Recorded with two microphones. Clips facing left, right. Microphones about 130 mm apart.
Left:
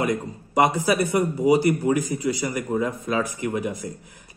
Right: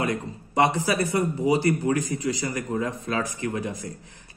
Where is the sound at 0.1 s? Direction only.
15° left (ahead or behind).